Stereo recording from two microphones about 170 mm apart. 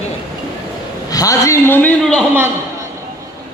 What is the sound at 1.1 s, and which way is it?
A man's voice, 20° left (ahead or behind).